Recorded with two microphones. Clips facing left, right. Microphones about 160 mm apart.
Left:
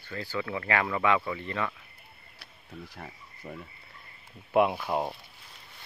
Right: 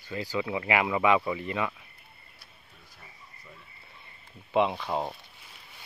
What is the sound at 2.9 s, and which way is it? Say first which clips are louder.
Cricket: left 8 dB; 70° left (ahead or behind).